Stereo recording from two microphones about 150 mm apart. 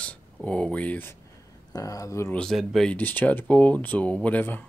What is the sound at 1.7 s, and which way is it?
Speech, 25° left (ahead or behind).